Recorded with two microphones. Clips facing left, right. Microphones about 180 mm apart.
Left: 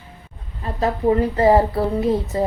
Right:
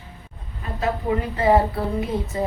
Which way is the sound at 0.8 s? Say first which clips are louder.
Left 6 dB; 35° left (ahead or behind).